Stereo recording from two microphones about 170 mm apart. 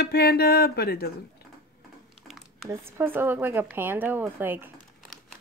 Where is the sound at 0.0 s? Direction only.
65° left (ahead or behind).